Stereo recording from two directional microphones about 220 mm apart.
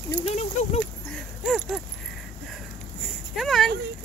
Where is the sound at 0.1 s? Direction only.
25° left (ahead or behind).